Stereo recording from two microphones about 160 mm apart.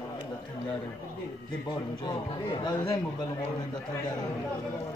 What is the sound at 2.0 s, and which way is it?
Speech, 25° left (ahead or behind).